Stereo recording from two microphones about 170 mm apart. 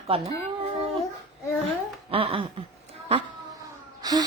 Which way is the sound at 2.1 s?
30° right (ahead or behind).